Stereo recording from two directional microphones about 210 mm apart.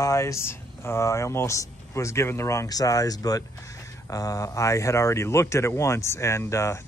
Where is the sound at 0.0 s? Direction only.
15° left (ahead or behind).